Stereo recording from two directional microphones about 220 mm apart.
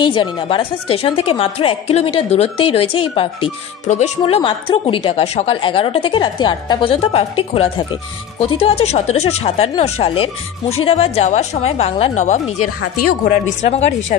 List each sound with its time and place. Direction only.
0.0 s a woman's voice: 20° left (ahead or behind)
13.0 s a woman's voice: 40° left (ahead or behind)
13.7 s a woman's voice: 30° left (ahead or behind)